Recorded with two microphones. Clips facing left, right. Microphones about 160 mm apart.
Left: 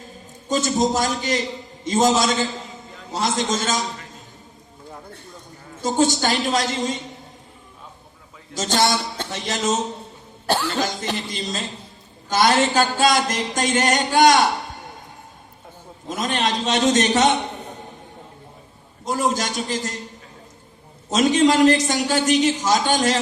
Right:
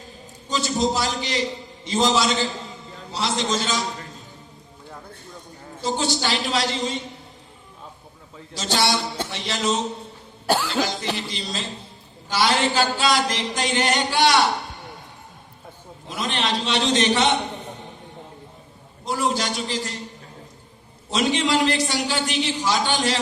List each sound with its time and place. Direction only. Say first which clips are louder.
0.4 s a man's voice: left 3 dB; 45° left (ahead or behind)
5.8 s a man's voice: left 5 dB; 45° left (ahead or behind)
8.5 s a man's voice: left 2 dB; 45° left (ahead or behind)
10.4 s cough: even; 10° right (ahead or behind)
11.3 s a man's voice: left 2 dB; 45° left (ahead or behind)
16.0 s a man's voice: left 3 dB; 45° left (ahead or behind)
19.0 s a man's voice: left 2 dB; 45° left (ahead or behind)
21.1 s a man's voice: left 5 dB; 45° left (ahead or behind)